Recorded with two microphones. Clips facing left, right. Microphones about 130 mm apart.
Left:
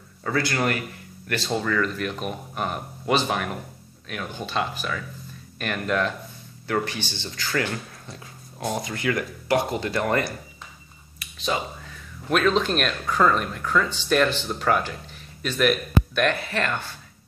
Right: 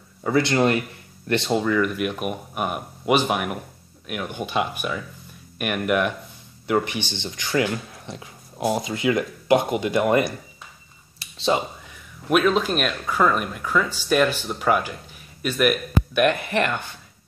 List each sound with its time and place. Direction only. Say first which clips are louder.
0.2 s speech: right 5 dB; 20° right (ahead or behind)
11.1 s whispering: right 5 dB; 30° right (ahead or behind)
11.9 s speech: right 4 dB; 10° right (ahead or behind)